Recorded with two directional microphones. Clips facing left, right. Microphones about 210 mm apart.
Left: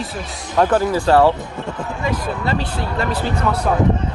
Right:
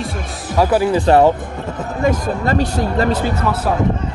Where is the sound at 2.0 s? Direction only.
45° right (ahead or behind).